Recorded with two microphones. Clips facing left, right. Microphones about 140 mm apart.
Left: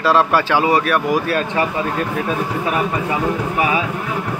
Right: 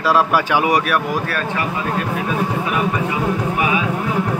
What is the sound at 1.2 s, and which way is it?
Speech, 20° left (ahead or behind).